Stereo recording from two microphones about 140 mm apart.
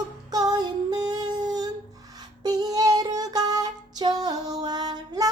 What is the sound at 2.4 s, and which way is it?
Music, 25° right (ahead or behind).